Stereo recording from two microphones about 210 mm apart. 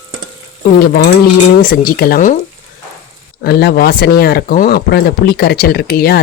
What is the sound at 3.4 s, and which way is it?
Speech, 50° left (ahead or behind).